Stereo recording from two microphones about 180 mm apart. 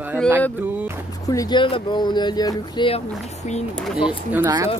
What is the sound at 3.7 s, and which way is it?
Speech, centre (ahead or behind).